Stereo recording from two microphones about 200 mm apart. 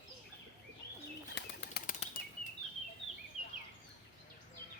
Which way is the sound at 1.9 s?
40° left (ahead or behind).